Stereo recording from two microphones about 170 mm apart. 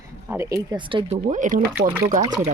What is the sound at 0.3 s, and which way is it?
Speech, 15° right (ahead or behind).